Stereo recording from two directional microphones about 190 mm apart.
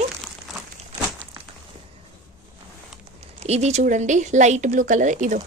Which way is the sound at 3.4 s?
35° right (ahead or behind).